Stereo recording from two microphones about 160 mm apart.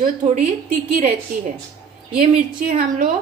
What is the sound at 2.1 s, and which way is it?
Speech, 60° right (ahead or behind).